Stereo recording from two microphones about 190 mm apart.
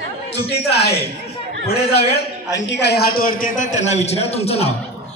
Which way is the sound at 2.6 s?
65° left (ahead or behind).